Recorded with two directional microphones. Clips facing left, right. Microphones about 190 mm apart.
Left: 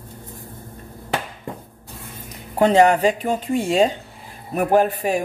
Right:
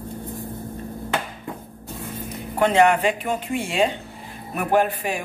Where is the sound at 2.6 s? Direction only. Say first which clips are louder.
Left 3 dB; 35° left (ahead or behind).